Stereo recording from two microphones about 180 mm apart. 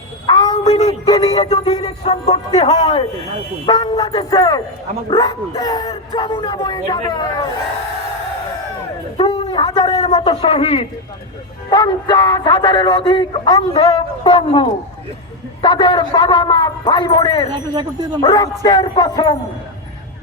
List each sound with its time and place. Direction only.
0.3 s a sound: 20° left (ahead or behind)
1.0 s a man's voice: 20° left (ahead or behind)
1.3 s speech: 30° left (ahead or behind)
2.6 s a man's voice: 25° left (ahead or behind)
9.1 s a sound: 30° left (ahead or behind)
10.2 s a man's voice: 35° left (ahead or behind)
17.5 s speech: 20° right (ahead or behind)
18.2 s a man's voice: 25° left (ahead or behind)